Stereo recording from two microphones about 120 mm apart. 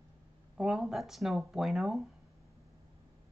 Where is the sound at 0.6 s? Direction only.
5° right (ahead or behind).